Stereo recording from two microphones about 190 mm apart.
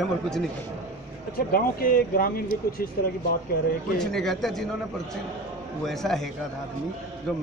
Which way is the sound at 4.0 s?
Centre (ahead or behind).